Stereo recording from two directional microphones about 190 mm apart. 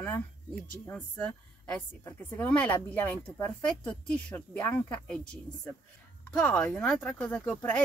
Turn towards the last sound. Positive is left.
turn(degrees=10)  # may be behind; listen again after turning